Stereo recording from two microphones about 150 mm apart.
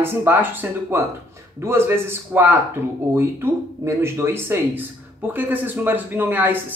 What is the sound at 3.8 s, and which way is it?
Speech, 15° right (ahead or behind).